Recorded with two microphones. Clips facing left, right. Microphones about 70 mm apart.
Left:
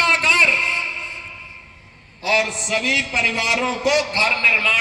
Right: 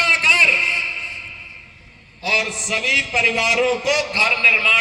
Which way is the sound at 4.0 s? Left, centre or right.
Left.